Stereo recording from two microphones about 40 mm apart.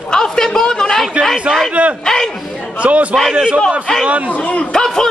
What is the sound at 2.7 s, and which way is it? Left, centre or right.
A man's voice, right.